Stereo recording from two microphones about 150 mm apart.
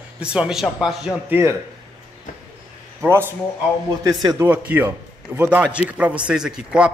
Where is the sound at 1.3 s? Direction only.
15° right (ahead or behind).